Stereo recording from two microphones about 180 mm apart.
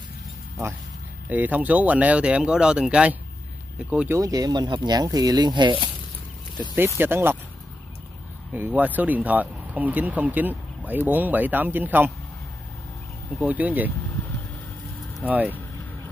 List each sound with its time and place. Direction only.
1.3 s speech: 10° right (ahead or behind)
4.2 s speech: 20° right (ahead or behind)
7.0 s speech: 10° right (ahead or behind)
8.5 s speech: 10° right (ahead or behind)
13.4 s speech: 10° right (ahead or behind)
15.2 s speech: 10° right (ahead or behind)